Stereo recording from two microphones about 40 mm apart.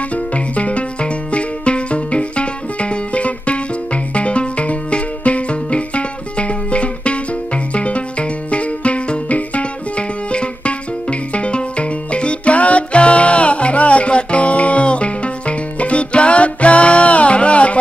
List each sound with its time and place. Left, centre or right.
0.1 s music: left